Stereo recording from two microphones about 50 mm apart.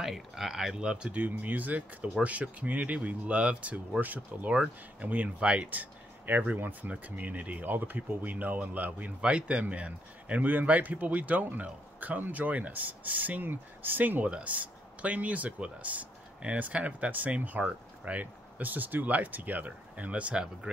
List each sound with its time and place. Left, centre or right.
0.0 s speech: centre
0.7 s speech: centre
1.2 s speech: right
9.2 s speech: right
14.2 s speech: right